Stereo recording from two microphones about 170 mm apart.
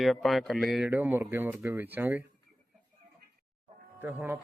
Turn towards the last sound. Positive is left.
turn(degrees=-10)  # may be behind; listen again after turning